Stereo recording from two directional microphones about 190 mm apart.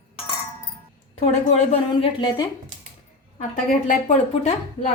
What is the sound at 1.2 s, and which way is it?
Speech, 35° left (ahead or behind).